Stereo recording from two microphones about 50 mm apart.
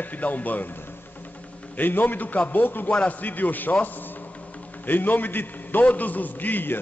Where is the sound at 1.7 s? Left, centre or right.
Left.